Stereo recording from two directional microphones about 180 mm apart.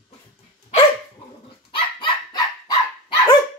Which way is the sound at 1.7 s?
30° left (ahead or behind).